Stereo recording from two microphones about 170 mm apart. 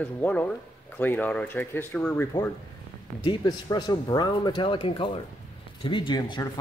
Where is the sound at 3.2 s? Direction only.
25° left (ahead or behind).